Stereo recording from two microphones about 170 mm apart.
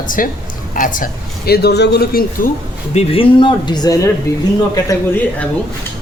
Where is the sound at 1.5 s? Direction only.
75° left (ahead or behind).